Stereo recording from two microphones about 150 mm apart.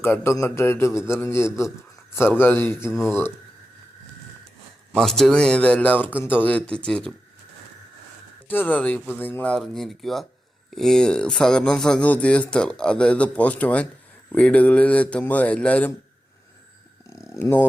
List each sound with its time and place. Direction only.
0.0 s a man's voice: 15° left (ahead or behind)
4.9 s a man's voice: 5° left (ahead or behind)
8.4 s a man's voice: 10° left (ahead or behind)
17.1 s dog: 20° left (ahead or behind)